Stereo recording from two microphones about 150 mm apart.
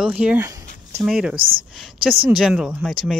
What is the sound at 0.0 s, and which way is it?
Speech, 10° right (ahead or behind).